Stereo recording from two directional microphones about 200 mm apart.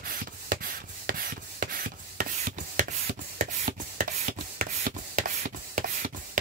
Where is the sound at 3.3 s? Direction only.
40° right (ahead or behind).